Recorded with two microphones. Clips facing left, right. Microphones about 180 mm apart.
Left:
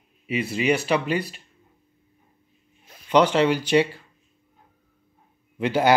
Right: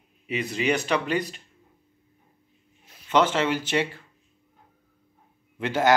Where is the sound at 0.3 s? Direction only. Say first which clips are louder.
Left 3 dB; 10° left (ahead or behind).